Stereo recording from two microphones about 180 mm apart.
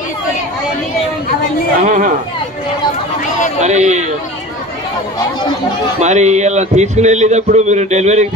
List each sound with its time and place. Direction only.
1.9 s speech: 45° right (ahead or behind)
3.6 s a man's voice: 40° right (ahead or behind)
5.9 s a man's voice: 40° right (ahead or behind)